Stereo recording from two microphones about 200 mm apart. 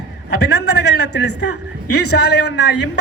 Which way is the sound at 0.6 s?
55° left (ahead or behind).